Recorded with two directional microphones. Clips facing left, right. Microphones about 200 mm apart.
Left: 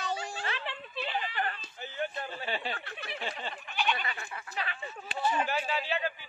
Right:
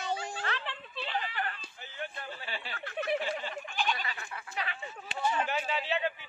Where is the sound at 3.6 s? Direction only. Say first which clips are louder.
Left 1 dB; 45° right (ahead or behind).